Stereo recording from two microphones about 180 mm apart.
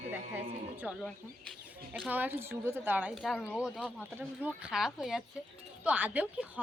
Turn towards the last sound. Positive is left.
turn(degrees=-10)  # may be behind; listen again after turning